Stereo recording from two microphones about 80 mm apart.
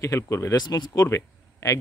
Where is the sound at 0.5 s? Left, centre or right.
Left.